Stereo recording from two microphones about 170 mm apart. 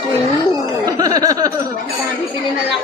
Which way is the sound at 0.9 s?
20° right (ahead or behind).